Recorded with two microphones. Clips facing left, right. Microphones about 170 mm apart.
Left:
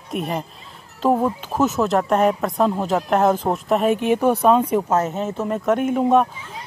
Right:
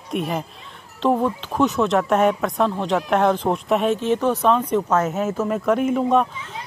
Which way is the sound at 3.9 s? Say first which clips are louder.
Left 2 dB; 10° left (ahead or behind).